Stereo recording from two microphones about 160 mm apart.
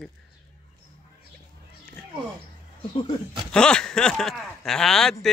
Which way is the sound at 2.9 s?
30° left (ahead or behind).